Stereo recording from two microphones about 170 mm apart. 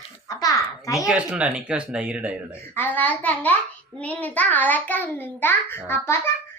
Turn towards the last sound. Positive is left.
turn(degrees=15)  # may be behind; listen again after turning